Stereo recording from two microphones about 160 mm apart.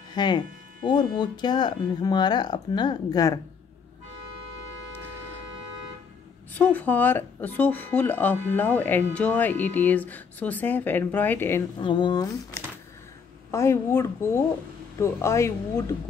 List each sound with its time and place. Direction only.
0.1 s speech: 25° left (ahead or behind)
6.5 s speech: 10° left (ahead or behind)
11.8 s speech: 30° left (ahead or behind)